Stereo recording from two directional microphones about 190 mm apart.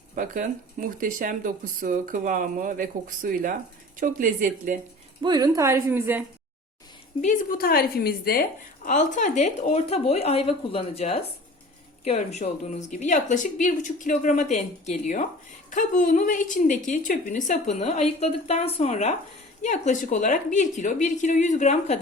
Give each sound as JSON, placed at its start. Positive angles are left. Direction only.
{"t": 0.2, "sound": "speech", "side_deg": -45}
{"t": 5.2, "sound": "a woman's voice", "side_deg": -20}
{"t": 7.2, "sound": "a woman's voice", "side_deg": 45}